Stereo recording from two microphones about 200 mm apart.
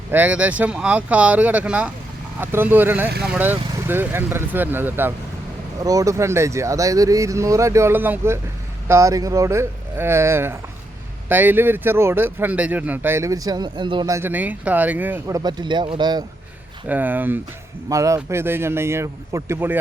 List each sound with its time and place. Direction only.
0.1 s speech: 10° right (ahead or behind)
15.4 s speech: 20° right (ahead or behind)
16.9 s speech: 10° right (ahead or behind)